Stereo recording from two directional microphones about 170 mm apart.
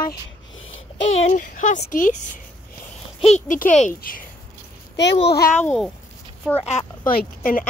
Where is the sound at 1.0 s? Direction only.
45° left (ahead or behind).